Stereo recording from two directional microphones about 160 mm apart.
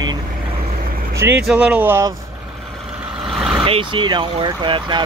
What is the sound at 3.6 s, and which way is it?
Speech, 35° right (ahead or behind).